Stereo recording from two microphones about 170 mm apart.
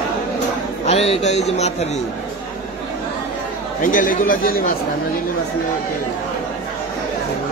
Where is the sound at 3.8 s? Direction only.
50° left (ahead or behind).